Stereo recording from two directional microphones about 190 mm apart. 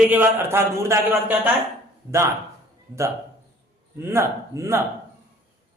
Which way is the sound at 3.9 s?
15° right (ahead or behind).